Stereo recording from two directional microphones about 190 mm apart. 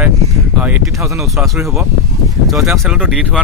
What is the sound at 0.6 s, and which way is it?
Speech, 15° right (ahead or behind).